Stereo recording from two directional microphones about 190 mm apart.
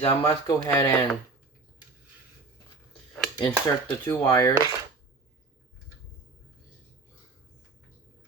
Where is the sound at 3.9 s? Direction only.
10° left (ahead or behind).